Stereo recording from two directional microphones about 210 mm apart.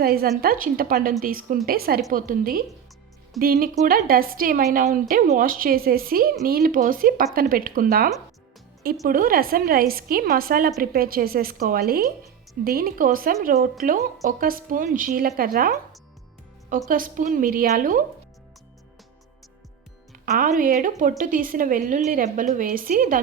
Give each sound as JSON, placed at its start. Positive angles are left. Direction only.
{"t": 0.0, "sound": "a woman's voice", "side_deg": -45}
{"t": 20.2, "sound": "a woman's voice", "side_deg": -45}